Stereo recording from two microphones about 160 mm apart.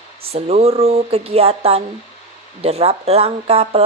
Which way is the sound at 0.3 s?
40° right (ahead or behind).